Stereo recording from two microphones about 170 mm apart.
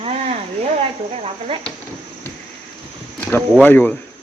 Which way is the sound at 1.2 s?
35° right (ahead or behind).